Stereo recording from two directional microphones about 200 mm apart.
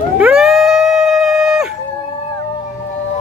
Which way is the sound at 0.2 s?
5° right (ahead or behind).